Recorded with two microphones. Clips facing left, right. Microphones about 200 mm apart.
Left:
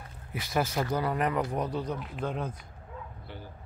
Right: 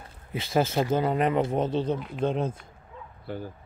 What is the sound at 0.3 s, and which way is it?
Speech, 25° right (ahead or behind).